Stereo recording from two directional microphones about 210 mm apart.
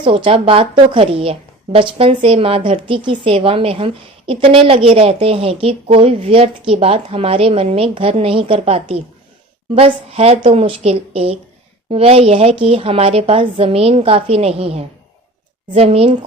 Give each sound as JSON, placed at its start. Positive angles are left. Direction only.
{"t": 0.0, "sound": "a woman's voice", "side_deg": -25}